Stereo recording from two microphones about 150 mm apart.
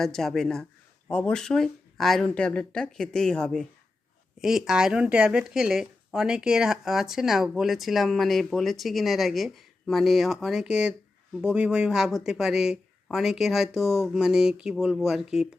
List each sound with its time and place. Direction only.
0.0 s speech: centre (ahead or behind)